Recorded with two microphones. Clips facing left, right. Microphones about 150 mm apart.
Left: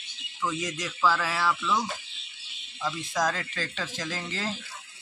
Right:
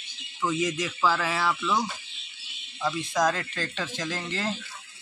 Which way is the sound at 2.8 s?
Centre (ahead or behind).